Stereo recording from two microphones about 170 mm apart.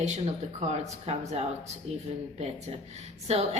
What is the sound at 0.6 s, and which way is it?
Speech, 40° right (ahead or behind).